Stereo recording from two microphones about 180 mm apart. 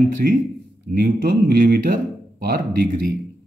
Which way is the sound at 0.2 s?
55° right (ahead or behind).